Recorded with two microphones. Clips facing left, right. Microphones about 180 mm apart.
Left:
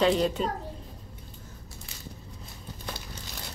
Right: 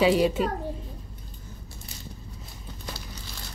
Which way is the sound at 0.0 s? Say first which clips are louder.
Right 3 dB; 5° right (ahead or behind).